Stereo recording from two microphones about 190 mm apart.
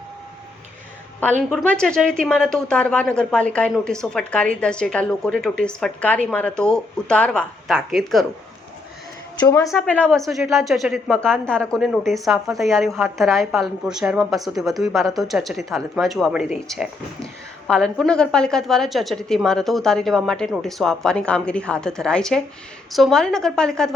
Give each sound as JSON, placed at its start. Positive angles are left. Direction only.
{"t": 1.2, "sound": "a woman's voice", "side_deg": 5}
{"t": 9.4, "sound": "a woman's voice", "side_deg": 20}
{"t": 9.7, "sound": "a woman's voice", "side_deg": 5}